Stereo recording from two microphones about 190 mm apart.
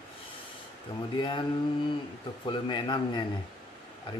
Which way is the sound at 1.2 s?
25° left (ahead or behind).